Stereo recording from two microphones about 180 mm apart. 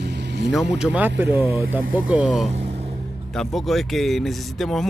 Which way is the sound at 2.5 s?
35° right (ahead or behind).